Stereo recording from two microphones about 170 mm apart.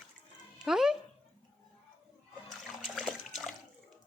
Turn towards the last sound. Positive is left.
turn(degrees=0)  # may be behind; listen again after turning